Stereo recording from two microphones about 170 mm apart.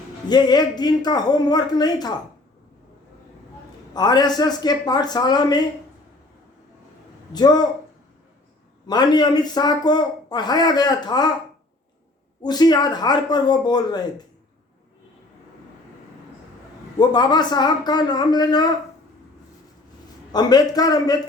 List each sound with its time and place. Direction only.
0.3 s a man's voice: 25° left (ahead or behind)
3.9 s a man's voice: 25° left (ahead or behind)
7.3 s a man's voice: 25° left (ahead or behind)
8.9 s a man's voice: 25° left (ahead or behind)
12.4 s a man's voice: 25° left (ahead or behind)
17.0 s a man's voice: 25° left (ahead or behind)
20.3 s a man's voice: 25° left (ahead or behind)